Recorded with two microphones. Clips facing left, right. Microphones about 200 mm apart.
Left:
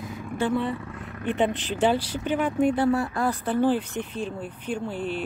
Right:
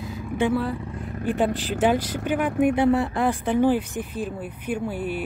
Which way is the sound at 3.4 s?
15° right (ahead or behind).